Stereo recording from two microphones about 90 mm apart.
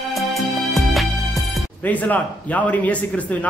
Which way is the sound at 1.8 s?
15° left (ahead or behind).